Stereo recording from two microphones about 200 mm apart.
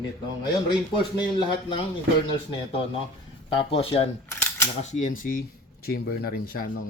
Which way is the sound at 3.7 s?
30° left (ahead or behind).